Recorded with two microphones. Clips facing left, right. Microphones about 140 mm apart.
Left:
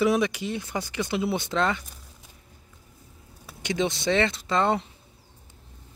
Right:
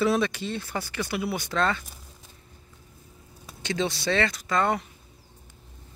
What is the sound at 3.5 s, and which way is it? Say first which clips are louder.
Speech: left 2 dB; 15° left (ahead or behind).